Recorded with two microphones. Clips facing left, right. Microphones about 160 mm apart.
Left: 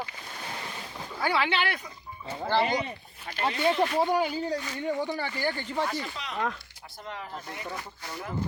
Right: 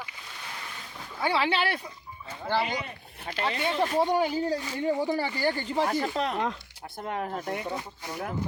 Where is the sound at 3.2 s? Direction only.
60° right (ahead or behind).